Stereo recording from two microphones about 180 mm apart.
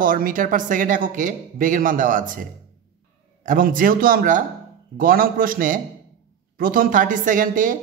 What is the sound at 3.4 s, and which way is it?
A woman's voice, 50° right (ahead or behind).